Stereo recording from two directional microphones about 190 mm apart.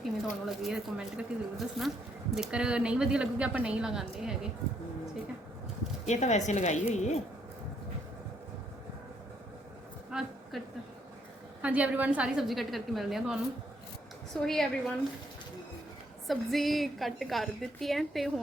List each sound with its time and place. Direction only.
0.0 s a woman's voice: centre (ahead or behind)
6.1 s speech: 35° left (ahead or behind)
10.1 s a sound: 5° right (ahead or behind)
11.6 s a woman's voice: 10° right (ahead or behind)
16.2 s a woman's voice: centre (ahead or behind)